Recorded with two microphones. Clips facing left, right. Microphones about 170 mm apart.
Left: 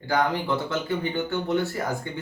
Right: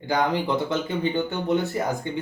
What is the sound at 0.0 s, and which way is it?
A man's voice, 20° right (ahead or behind).